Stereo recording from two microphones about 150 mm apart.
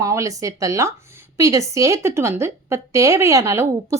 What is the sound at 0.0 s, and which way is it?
A woman's voice, 20° right (ahead or behind).